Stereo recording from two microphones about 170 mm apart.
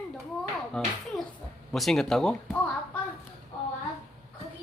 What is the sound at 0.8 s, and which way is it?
A child's voice, 5° left (ahead or behind).